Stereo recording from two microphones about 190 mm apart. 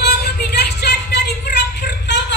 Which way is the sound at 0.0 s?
60° left (ahead or behind).